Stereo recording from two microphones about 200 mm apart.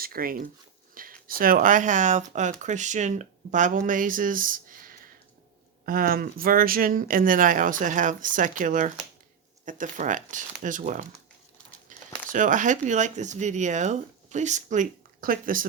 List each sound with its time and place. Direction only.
0.0 s speech: 45° right (ahead or behind)
1.0 s a sound: 45° right (ahead or behind)
1.4 s speech: 45° right (ahead or behind)